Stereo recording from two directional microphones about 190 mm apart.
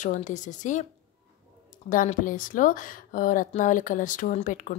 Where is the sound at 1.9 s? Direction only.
45° left (ahead or behind).